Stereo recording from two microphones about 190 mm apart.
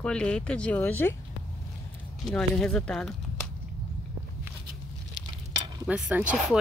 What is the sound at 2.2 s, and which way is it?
Speech, 5° left (ahead or behind).